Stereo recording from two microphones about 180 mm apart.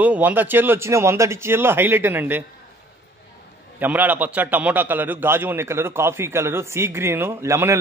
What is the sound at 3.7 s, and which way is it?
A man's voice, 10° right (ahead or behind).